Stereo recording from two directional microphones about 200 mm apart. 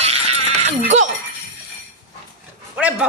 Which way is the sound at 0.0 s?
30° right (ahead or behind).